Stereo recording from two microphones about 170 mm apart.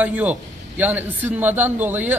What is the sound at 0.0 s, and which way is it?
A man's voice, 10° right (ahead or behind).